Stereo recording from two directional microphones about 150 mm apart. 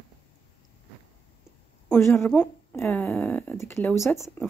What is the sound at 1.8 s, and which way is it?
A woman's voice, 15° left (ahead or behind).